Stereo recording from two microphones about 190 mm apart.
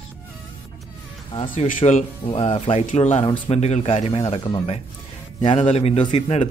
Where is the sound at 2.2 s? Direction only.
30° left (ahead or behind).